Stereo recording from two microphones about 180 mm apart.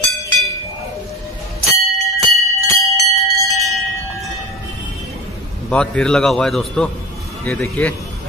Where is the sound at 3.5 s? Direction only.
Centre (ahead or behind).